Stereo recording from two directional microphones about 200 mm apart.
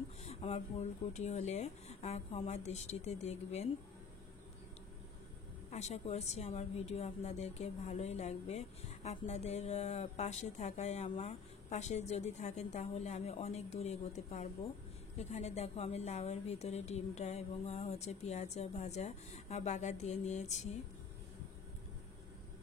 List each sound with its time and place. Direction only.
0.2 s a woman's voice: 30° left (ahead or behind)
5.7 s a woman's voice: 35° left (ahead or behind)